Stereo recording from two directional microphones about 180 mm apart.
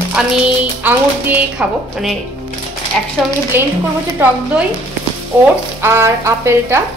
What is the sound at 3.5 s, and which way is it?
Speech, 10° right (ahead or behind).